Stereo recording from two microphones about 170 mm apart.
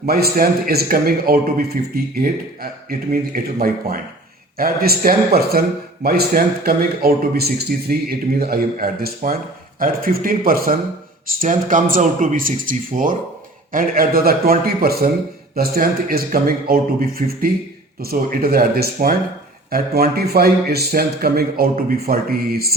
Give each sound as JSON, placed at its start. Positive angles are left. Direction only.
{"t": 0.0, "sound": "speech", "side_deg": -60}